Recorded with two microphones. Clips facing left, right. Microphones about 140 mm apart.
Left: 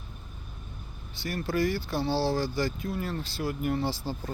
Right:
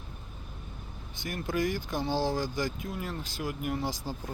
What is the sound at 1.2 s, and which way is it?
Speech, 15° right (ahead or behind).